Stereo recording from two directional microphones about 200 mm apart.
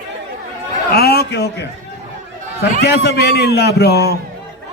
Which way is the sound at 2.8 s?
55° left (ahead or behind).